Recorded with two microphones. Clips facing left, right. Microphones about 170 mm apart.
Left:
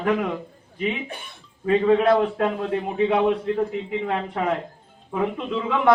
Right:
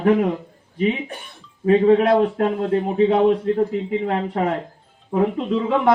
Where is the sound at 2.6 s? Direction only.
35° right (ahead or behind).